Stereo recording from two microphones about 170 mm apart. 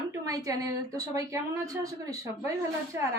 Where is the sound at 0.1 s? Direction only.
20° right (ahead or behind).